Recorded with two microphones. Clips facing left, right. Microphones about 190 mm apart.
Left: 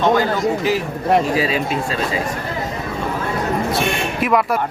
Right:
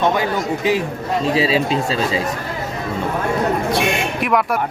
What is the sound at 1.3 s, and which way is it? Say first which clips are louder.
Speech: right 2 dB; 25° right (ahead or behind).